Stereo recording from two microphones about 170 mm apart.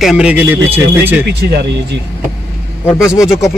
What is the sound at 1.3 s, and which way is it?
Speech, 80° right.